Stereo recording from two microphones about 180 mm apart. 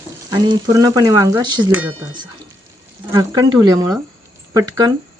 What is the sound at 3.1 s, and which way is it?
Speech, 20° right (ahead or behind).